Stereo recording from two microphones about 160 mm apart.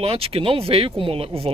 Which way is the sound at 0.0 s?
35° right (ahead or behind).